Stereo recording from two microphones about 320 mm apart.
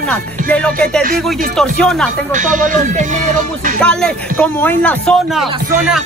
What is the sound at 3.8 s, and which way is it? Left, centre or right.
Music, centre.